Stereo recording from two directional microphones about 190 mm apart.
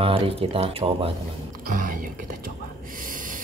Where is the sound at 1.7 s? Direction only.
45° right (ahead or behind).